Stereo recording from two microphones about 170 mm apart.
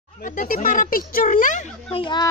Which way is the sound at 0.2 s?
50° left (ahead or behind).